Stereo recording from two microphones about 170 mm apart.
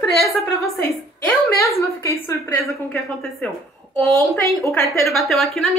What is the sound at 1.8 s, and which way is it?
Speech, 15° left (ahead or behind).